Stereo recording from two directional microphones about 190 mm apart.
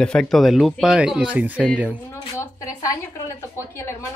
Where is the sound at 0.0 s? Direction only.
5° left (ahead or behind).